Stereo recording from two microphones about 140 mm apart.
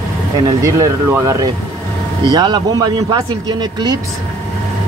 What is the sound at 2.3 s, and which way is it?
A man's voice, 30° right (ahead or behind).